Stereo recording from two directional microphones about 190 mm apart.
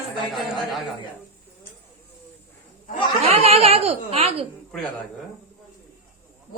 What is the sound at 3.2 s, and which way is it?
A woman's voice, 30° right (ahead or behind).